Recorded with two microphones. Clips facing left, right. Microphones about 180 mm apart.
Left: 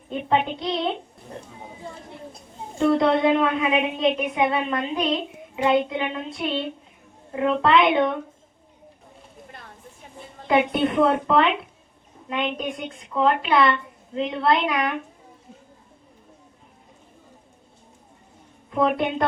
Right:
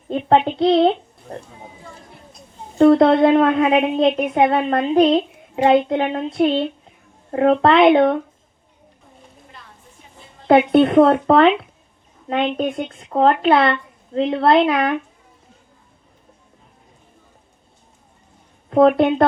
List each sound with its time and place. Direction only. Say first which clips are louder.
0.1 s a woman's voice: right 6 dB; 50° right (ahead or behind)
2.7 s a woman's voice: right 7 dB; 50° right (ahead or behind)
10.4 s a woman's voice: right 8 dB; 55° right (ahead or behind)
12.5 s a woman's voice: right 8 dB; 55° right (ahead or behind)
18.7 s a woman's voice: right 9 dB; 50° right (ahead or behind)